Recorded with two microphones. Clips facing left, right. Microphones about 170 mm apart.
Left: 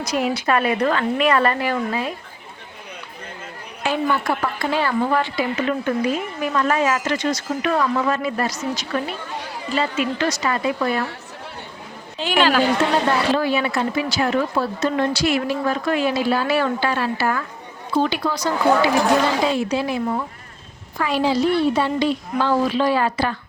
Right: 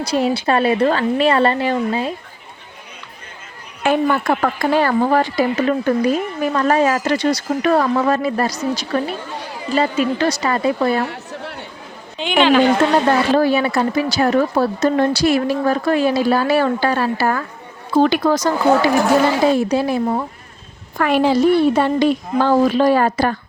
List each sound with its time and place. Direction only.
0.0 s speech: 30° right (ahead or behind)
3.8 s speech: 55° right (ahead or behind); by 11.1 s 30° right (ahead or behind)
12.2 s speech: 5° left (ahead or behind)
13.3 s speech: 40° right (ahead or behind)
21.0 s speech: 55° right (ahead or behind)